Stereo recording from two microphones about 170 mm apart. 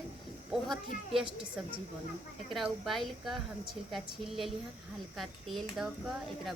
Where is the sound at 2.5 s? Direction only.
Centre (ahead or behind).